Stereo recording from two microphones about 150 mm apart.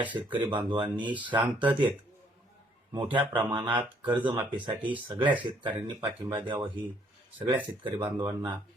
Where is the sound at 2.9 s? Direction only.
30° right (ahead or behind).